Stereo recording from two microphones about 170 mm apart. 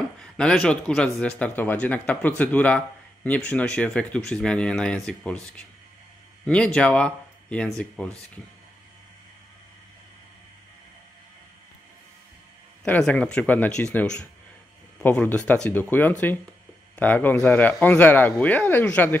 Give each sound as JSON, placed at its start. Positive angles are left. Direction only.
{"t": 0.2, "sound": "speech", "side_deg": 5}
{"t": 6.4, "sound": "speech", "side_deg": 5}
{"t": 12.8, "sound": "speech", "side_deg": 10}